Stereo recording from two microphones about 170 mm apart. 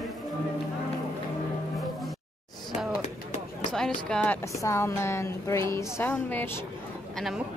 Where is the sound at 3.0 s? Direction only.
40° left (ahead or behind).